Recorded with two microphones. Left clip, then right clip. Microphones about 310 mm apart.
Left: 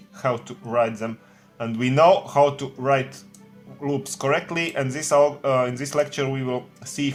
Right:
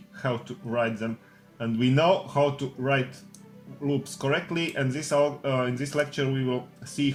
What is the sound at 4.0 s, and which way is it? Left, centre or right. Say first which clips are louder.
Speech: left 5 dB; left.